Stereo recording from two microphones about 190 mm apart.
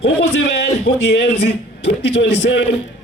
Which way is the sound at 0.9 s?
60° left (ahead or behind).